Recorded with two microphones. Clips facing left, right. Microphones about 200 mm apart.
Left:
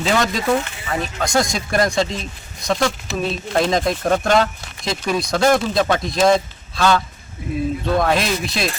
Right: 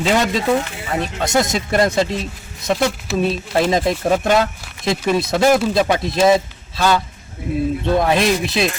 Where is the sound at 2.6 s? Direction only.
5° right (ahead or behind).